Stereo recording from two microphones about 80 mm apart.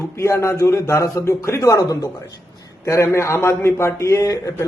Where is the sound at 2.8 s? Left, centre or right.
Left.